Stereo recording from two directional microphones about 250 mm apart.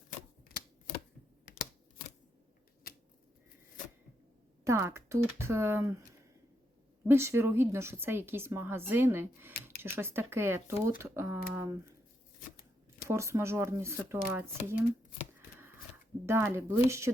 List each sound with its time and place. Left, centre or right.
0.4 s typewriter: left
4.6 s a woman's voice: centre
7.1 s a woman's voice: centre
13.1 s a woman's voice: centre
16.2 s a woman's voice: centre